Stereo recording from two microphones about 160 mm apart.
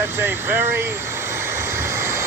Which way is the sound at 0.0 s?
15° right (ahead or behind).